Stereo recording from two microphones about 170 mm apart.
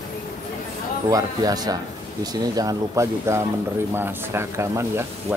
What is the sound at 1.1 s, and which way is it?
Speech, 20° right (ahead or behind).